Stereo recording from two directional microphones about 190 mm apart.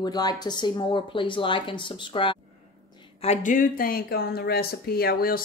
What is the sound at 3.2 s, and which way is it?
Speech, 40° left (ahead or behind).